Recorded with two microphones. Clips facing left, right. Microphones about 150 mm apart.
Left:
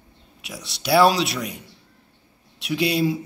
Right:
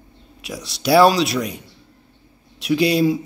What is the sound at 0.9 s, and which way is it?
Speech, centre (ahead or behind).